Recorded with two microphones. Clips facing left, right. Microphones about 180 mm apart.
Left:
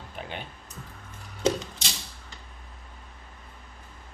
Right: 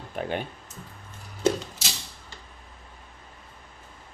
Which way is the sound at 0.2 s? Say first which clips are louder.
Right 8 dB; 50° right (ahead or behind).